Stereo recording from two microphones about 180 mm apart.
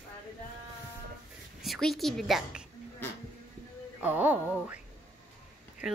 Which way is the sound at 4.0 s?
10° right (ahead or behind).